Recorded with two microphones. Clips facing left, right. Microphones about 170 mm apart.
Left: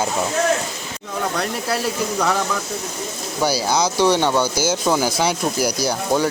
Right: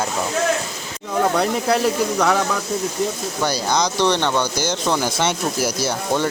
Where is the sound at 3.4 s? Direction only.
5° left (ahead or behind).